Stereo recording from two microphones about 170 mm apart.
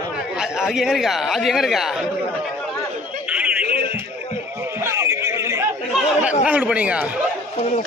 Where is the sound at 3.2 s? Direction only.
5° right (ahead or behind).